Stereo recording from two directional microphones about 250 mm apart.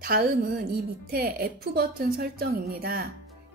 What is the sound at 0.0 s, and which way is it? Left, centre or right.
A woman's voice, right.